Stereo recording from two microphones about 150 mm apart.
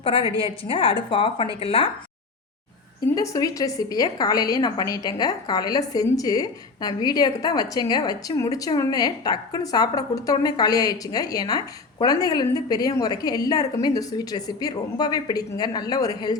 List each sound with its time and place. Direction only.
0.0 s a woman's voice: 40° left (ahead or behind)
3.2 s a woman's voice: 25° left (ahead or behind)